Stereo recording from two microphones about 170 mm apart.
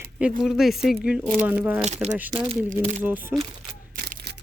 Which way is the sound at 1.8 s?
40° right (ahead or behind).